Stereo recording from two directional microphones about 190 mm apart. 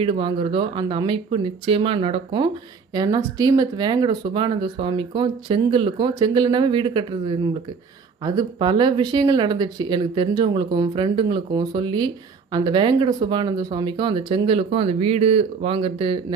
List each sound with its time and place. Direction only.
0.0 s speech: 30° right (ahead or behind)